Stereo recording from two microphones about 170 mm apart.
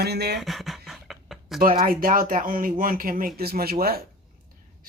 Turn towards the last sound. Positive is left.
turn(degrees=-65)  # may be behind; listen again after turning